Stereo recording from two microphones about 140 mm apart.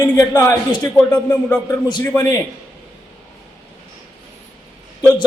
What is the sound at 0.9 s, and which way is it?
Speech, 10° left (ahead or behind).